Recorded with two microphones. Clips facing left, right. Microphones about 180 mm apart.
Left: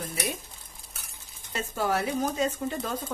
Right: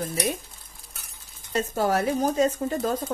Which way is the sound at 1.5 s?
40° right (ahead or behind).